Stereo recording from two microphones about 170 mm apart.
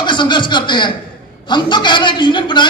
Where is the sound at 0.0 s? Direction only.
25° left (ahead or behind).